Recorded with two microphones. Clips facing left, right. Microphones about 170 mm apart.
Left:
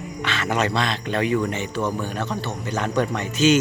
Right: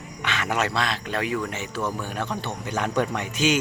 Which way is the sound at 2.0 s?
10° right (ahead or behind).